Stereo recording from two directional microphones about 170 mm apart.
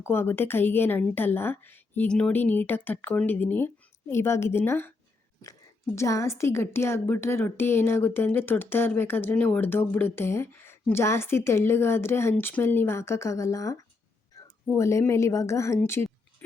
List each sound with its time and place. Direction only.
0.0 s a woman's voice: 15° left (ahead or behind)
6.0 s a woman's voice: 15° left (ahead or behind)